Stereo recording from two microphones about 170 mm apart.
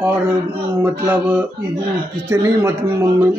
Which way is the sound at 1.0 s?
10° right (ahead or behind).